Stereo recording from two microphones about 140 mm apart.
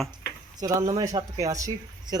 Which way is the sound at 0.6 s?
25° right (ahead or behind).